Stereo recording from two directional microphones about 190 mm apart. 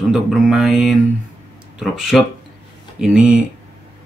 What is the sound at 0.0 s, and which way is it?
Speech, centre (ahead or behind).